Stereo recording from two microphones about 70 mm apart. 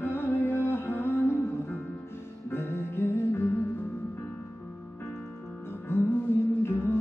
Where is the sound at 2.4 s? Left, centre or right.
Left.